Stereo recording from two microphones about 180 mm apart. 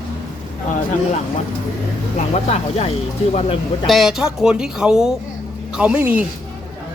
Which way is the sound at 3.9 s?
Centre (ahead or behind).